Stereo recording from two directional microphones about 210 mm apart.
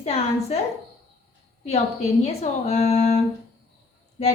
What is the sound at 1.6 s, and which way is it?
A woman's voice, 30° left (ahead or behind).